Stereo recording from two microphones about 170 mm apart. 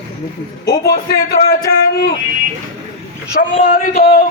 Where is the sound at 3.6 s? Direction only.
60° left (ahead or behind).